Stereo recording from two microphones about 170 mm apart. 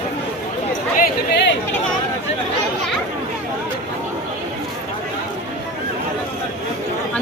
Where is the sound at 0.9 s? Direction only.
60° left (ahead or behind).